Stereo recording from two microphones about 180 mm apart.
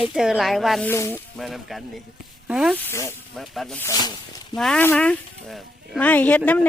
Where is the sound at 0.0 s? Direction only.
5° right (ahead or behind).